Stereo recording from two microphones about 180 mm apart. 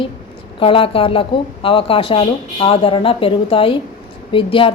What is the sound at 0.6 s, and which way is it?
A woman's voice, 30° left (ahead or behind).